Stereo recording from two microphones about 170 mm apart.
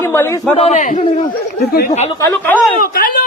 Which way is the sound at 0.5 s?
40° left (ahead or behind).